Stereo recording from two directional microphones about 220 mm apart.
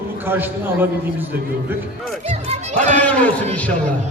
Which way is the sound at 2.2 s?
30° right (ahead or behind).